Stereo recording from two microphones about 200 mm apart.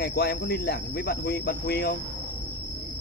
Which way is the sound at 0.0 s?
50° left (ahead or behind).